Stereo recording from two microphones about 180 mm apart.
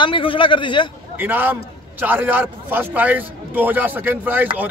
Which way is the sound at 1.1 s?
10° right (ahead or behind).